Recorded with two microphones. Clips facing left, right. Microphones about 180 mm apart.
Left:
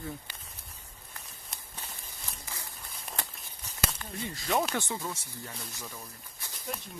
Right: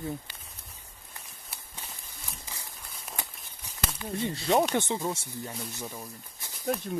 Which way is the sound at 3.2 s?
10° right (ahead or behind).